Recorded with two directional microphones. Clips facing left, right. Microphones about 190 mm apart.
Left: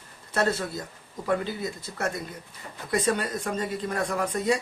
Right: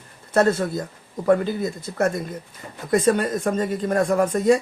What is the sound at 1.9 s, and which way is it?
Speech, 40° right (ahead or behind).